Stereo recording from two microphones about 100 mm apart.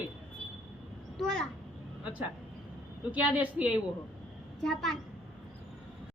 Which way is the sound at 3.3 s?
15° right (ahead or behind).